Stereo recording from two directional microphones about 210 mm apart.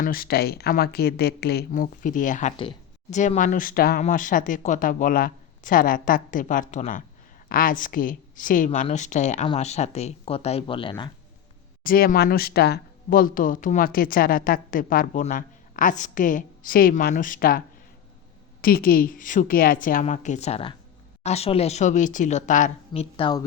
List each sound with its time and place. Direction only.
0.0 s speech: 45° left (ahead or behind); by 11.1 s 25° left (ahead or behind)
11.8 s speech: 45° left (ahead or behind)
18.6 s speech: 45° left (ahead or behind)
22.9 s speech: 25° left (ahead or behind)